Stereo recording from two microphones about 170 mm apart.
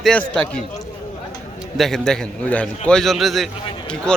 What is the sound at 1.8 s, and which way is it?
Speech, centre (ahead or behind).